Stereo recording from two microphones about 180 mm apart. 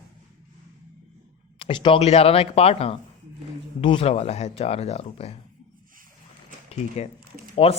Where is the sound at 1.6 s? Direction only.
30° left (ahead or behind).